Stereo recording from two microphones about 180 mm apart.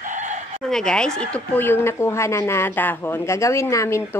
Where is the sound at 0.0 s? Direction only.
45° right (ahead or behind).